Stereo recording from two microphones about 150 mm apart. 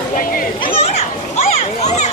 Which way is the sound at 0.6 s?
40° left (ahead or behind).